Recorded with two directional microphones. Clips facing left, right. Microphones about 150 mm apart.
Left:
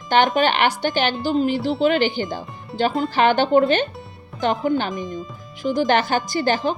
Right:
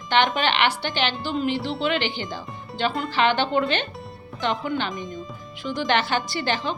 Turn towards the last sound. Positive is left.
turn(degrees=45)  # may be behind; listen again after turning